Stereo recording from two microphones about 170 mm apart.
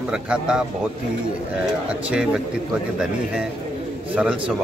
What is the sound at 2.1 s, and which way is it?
Speech, 5° right (ahead or behind).